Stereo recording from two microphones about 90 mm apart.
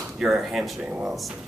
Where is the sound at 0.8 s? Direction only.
10° right (ahead or behind).